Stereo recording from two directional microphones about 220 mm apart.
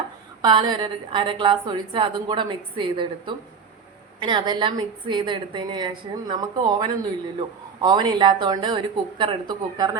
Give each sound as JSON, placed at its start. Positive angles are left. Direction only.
{"t": 0.4, "sound": "a woman's voice", "side_deg": -20}